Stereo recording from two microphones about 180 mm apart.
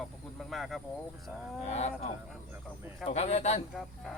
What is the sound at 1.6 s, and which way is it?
Speech, 35° left (ahead or behind).